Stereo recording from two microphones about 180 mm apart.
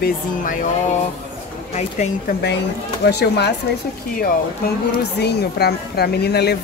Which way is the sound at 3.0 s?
65° left (ahead or behind).